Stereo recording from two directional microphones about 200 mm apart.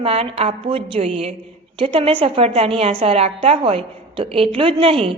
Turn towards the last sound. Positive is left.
turn(degrees=-25)  # may be behind; listen again after turning